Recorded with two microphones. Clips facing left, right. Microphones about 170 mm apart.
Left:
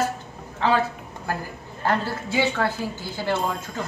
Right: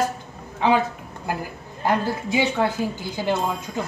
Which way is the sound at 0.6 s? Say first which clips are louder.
Right 2 dB; 15° right (ahead or behind).